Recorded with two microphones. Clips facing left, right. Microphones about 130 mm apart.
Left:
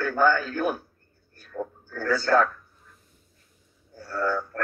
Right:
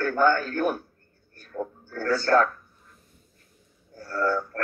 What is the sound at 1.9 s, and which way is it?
Speech, 50° right (ahead or behind).